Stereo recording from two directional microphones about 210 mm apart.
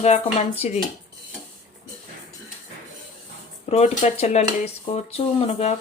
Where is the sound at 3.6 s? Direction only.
35° left (ahead or behind).